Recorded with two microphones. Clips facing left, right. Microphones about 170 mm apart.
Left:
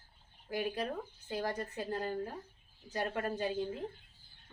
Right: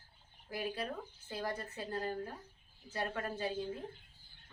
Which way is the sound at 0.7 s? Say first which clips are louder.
Left 3 dB; 15° left (ahead or behind).